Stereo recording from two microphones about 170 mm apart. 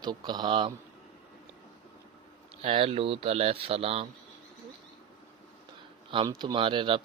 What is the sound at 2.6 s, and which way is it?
Speech, 35° right (ahead or behind).